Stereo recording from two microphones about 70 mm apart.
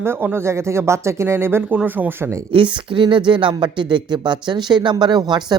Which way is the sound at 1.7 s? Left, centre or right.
Right.